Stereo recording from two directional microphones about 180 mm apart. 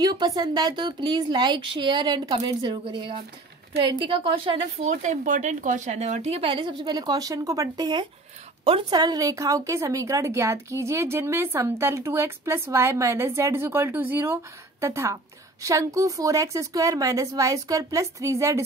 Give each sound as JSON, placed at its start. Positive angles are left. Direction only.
{"t": 0.0, "sound": "a woman's voice", "side_deg": -25}